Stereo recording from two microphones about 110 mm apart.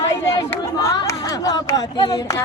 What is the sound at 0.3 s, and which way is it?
Speech, 30° left (ahead or behind).